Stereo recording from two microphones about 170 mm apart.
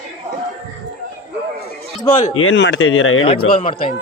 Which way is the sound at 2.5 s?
90° left.